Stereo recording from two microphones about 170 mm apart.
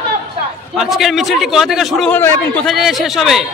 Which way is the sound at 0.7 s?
Centre (ahead or behind).